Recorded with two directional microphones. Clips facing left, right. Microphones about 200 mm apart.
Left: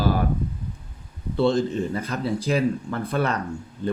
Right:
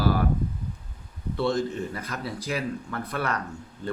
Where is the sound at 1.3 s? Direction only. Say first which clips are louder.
Left 5 dB; 25° left (ahead or behind).